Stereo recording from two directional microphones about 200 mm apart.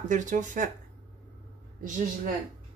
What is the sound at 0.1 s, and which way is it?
Speech, 40° right (ahead or behind).